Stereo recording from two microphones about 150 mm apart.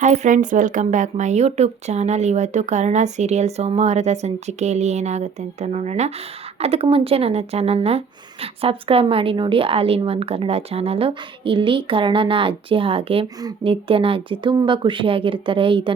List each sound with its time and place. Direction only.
0.0 s speech: 55° right (ahead or behind); by 16.0 s 35° right (ahead or behind)